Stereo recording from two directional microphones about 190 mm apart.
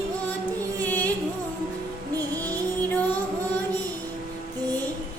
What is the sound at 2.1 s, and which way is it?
Music, 20° right (ahead or behind).